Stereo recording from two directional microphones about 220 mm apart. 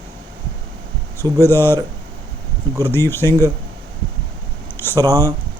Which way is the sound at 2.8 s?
10° left (ahead or behind).